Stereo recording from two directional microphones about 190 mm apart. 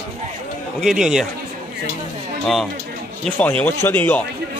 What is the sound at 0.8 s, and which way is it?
Speech, 5° right (ahead or behind).